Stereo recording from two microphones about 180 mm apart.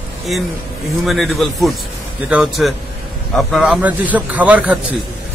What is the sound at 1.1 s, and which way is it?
A man's voice, centre (ahead or behind).